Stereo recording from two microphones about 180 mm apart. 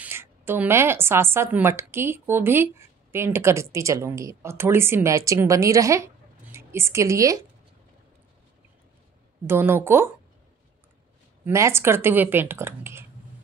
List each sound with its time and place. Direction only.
0.0 s a woman's voice: 15° right (ahead or behind)
9.5 s a woman's voice: 15° right (ahead or behind)
11.4 s a woman's voice: 15° right (ahead or behind)